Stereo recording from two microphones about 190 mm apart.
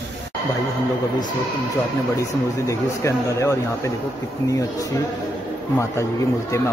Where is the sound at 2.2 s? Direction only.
15° left (ahead or behind).